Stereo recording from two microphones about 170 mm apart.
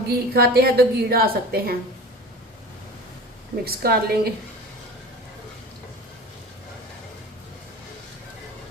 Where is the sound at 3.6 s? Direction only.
65° right (ahead or behind).